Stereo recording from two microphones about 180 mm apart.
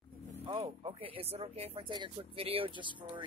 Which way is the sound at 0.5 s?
30° right (ahead or behind).